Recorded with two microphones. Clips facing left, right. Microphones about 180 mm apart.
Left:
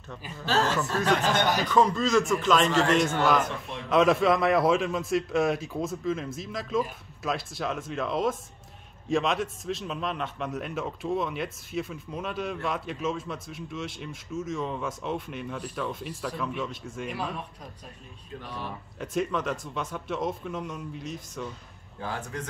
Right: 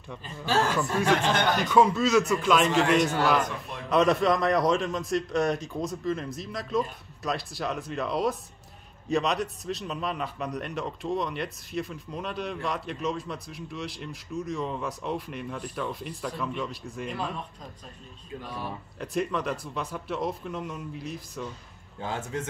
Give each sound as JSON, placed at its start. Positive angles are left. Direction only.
{"t": 0.4, "sound": "a man's voice", "side_deg": -10}
{"t": 18.4, "sound": "a man's voice", "side_deg": -10}
{"t": 18.9, "sound": "a man's voice", "side_deg": 0}
{"t": 22.0, "sound": "a man's voice", "side_deg": -20}